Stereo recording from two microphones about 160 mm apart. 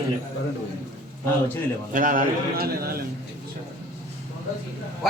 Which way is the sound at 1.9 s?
55° right (ahead or behind).